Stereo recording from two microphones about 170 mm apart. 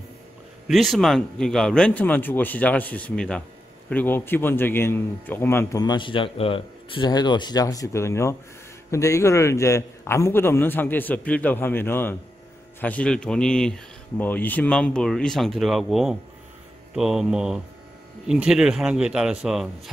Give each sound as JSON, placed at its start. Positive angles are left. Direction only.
{"t": 0.7, "sound": "a man's voice", "side_deg": 0}